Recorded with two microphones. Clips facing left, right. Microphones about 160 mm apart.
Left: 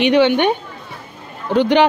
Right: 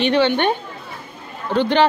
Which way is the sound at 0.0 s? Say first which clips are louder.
Left 3 dB; 15° left (ahead or behind).